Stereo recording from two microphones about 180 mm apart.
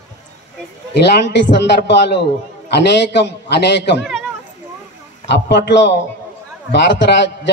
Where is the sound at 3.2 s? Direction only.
70° left (ahead or behind).